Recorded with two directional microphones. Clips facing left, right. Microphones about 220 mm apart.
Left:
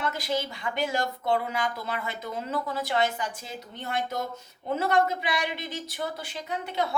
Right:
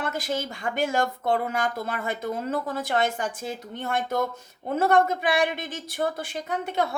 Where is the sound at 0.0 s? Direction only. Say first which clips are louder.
Right 1 dB; 50° right (ahead or behind).